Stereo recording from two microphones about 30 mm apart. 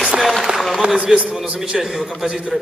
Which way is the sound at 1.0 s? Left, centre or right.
Right.